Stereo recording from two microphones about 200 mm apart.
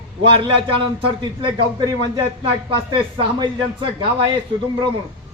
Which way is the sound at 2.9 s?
25° right (ahead or behind).